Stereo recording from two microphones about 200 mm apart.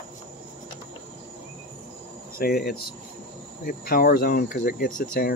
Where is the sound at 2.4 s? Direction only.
50° left (ahead or behind).